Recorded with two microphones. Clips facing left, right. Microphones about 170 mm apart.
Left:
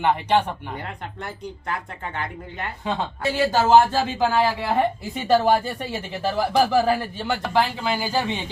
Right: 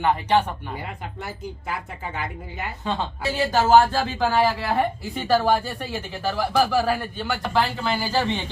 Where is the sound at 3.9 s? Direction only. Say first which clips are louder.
Left 1 dB; 20° left (ahead or behind).